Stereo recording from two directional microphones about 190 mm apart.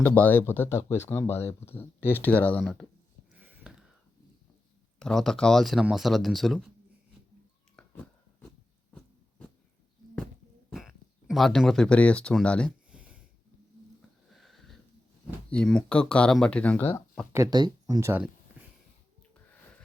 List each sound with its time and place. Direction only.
0.0 s speech: 10° left (ahead or behind)
3.3 s whispering: 10° right (ahead or behind)
4.9 s speech: 5° left (ahead or behind)
7.8 s biting: 5° left (ahead or behind)
10.7 s speech: centre (ahead or behind)
12.9 s a sound: 5° right (ahead or behind)
14.3 s sniff: centre (ahead or behind)
15.4 s speech: 5° left (ahead or behind)
17.3 s speech: 20° right (ahead or behind)